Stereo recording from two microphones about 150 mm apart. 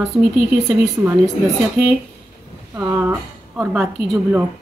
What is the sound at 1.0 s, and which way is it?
Speech, 20° right (ahead or behind).